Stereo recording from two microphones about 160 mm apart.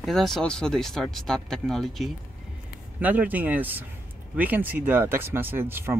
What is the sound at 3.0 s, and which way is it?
Speech, 10° right (ahead or behind).